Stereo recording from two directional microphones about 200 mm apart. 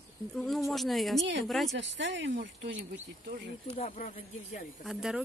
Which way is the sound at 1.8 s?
65° right (ahead or behind).